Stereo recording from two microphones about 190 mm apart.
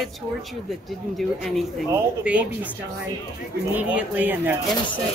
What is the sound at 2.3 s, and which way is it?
Speech, 5° right (ahead or behind).